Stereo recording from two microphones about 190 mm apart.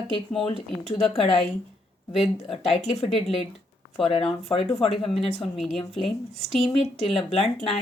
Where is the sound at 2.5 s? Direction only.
30° left (ahead or behind).